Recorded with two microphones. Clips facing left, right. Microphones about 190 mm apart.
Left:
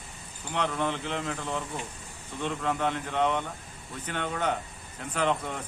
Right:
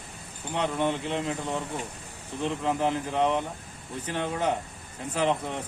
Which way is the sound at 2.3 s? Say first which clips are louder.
Right 2 dB; 30° right (ahead or behind).